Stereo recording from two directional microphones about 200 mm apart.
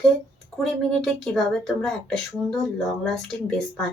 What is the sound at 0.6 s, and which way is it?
Speech, centre (ahead or behind).